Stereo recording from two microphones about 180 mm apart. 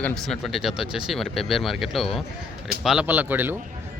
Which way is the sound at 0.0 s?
5° left (ahead or behind).